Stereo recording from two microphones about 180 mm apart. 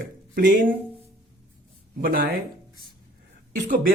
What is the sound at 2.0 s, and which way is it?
Speech, 55° right (ahead or behind).